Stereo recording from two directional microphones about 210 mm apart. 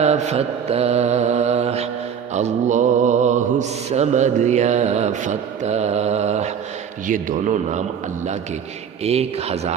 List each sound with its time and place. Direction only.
0.0 s mantra: 30° right (ahead or behind)
9.0 s speech: 30° right (ahead or behind)